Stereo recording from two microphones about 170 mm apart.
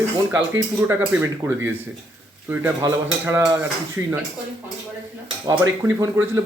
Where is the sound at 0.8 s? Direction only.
15° right (ahead or behind).